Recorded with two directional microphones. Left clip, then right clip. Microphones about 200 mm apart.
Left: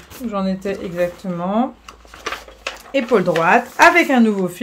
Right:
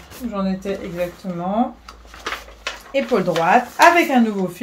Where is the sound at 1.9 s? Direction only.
30° left (ahead or behind).